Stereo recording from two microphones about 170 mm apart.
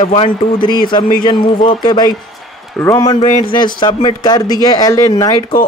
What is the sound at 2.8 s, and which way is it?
Speech, 15° left (ahead or behind).